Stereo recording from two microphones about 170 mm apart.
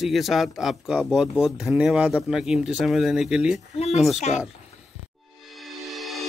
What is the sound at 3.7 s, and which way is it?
Speech, 40° left (ahead or behind).